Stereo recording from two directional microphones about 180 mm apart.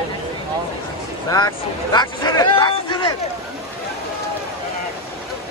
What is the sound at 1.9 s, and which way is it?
Speech, 25° left (ahead or behind).